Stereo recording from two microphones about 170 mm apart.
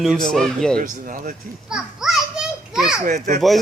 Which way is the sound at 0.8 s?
55° right (ahead or behind).